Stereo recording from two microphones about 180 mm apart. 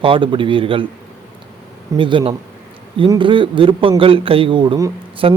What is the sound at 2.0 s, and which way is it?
A man's voice, 30° right (ahead or behind).